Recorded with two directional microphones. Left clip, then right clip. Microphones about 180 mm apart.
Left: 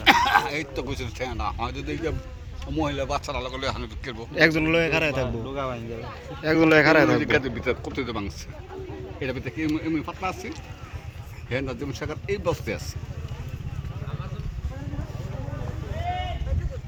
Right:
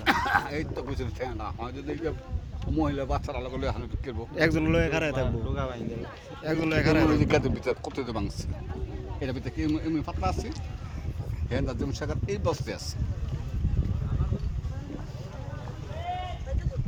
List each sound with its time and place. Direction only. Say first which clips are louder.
0.0 s speech: left 7 dB; 65° right (ahead or behind); by 4.3 s 40° right (ahead or behind)
4.4 s a man's voice: left 5 dB; 5° right (ahead or behind)
5.5 s speech: left 6 dB; 35° left (ahead or behind)
6.4 s a man's voice: left 9 dB; 5° right (ahead or behind)
7.2 s speech: left 2 dB; 85° right; by 12.8 s 60° right (ahead or behind)